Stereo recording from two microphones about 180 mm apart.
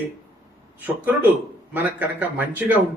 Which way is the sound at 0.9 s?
10° right (ahead or behind).